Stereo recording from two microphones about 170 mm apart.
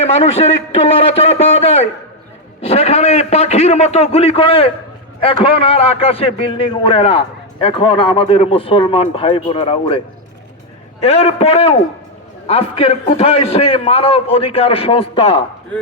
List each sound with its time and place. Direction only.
0.0 s a man's voice: 35° left (ahead or behind)
11.0 s a man's voice: 35° left (ahead or behind)